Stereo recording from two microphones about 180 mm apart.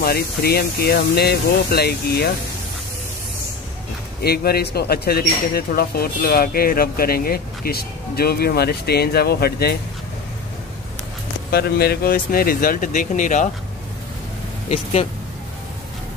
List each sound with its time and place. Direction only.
0.0 s speech: 60° left (ahead or behind)
4.2 s speech: 60° left (ahead or behind)
11.5 s speech: 60° left (ahead or behind)
14.7 s speech: 35° left (ahead or behind)